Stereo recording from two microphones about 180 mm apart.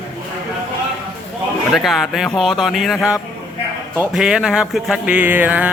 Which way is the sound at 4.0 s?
5° right (ahead or behind).